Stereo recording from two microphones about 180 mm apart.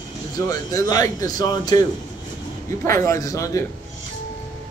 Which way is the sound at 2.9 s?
20° left (ahead or behind).